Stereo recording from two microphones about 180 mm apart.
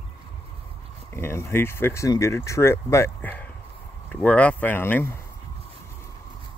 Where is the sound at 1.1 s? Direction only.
15° left (ahead or behind).